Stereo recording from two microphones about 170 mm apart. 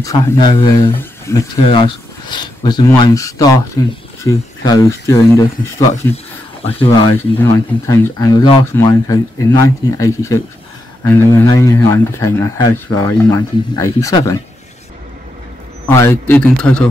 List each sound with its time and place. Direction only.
0.0 s speech: 20° left (ahead or behind)
0.9 s a sound: 15° left (ahead or behind)
1.7 s speech: 25° left (ahead or behind)
7.2 s speech: 15° left (ahead or behind)
15.9 s speech: 15° left (ahead or behind)